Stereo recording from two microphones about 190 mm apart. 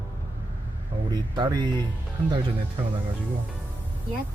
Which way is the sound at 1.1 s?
25° right (ahead or behind).